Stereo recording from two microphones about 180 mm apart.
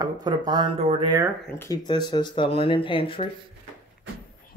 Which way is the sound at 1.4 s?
15° left (ahead or behind).